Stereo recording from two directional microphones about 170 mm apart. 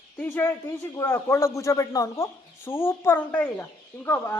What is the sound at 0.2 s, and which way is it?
Speech, 10° left (ahead or behind).